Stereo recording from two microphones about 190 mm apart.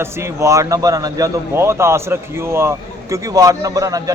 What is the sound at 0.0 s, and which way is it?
A man's voice, 15° right (ahead or behind).